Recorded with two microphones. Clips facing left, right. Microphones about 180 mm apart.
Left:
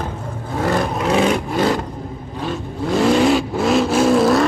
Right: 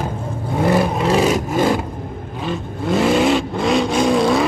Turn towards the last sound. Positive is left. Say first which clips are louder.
# left 2 dB
turn(degrees=0)  # may be behind; listen again after turning